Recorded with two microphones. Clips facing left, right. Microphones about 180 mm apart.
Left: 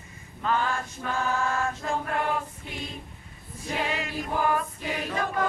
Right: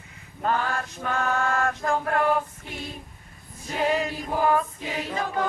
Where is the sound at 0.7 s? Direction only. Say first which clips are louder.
Right 2 dB; 65° right (ahead or behind).